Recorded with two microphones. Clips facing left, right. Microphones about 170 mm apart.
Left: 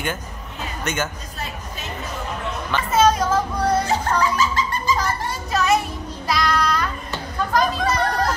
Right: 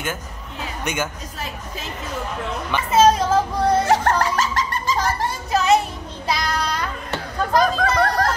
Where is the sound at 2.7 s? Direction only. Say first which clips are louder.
Even; 15° right (ahead or behind).